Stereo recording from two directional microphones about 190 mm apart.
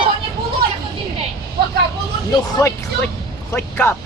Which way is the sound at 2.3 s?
20° left (ahead or behind).